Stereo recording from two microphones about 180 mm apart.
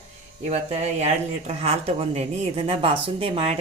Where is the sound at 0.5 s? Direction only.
35° right (ahead or behind).